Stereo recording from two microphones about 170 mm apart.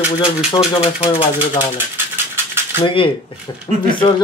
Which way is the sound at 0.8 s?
35° left (ahead or behind).